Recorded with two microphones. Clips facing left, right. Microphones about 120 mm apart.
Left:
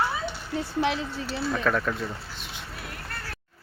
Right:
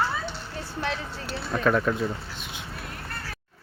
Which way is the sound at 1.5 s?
5° right (ahead or behind).